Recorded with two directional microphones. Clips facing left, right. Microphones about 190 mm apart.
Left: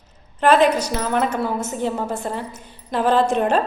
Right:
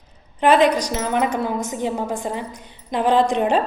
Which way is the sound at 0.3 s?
15° right (ahead or behind).